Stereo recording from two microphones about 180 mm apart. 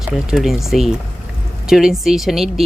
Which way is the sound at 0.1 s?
Centre (ahead or behind).